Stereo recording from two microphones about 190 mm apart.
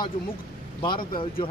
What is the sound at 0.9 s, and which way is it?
Speech, 50° left (ahead or behind).